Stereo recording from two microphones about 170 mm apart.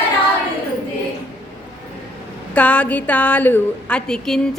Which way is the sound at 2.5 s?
10° left (ahead or behind).